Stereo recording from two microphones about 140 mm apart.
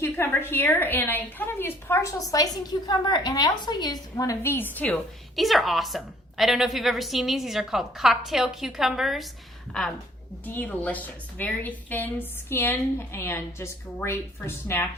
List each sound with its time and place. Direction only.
0.0 s a woman's voice: 15° left (ahead or behind)
5.4 s a woman's voice: centre (ahead or behind)
10.4 s a woman's voice: 10° left (ahead or behind)